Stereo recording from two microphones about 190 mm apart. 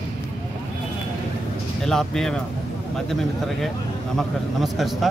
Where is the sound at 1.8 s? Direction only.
Centre (ahead or behind).